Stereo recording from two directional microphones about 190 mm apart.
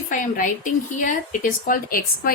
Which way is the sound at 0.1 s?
45° left (ahead or behind).